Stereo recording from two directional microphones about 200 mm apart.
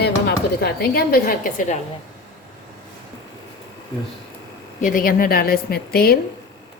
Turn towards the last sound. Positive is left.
turn(degrees=50)  # may be behind; listen again after turning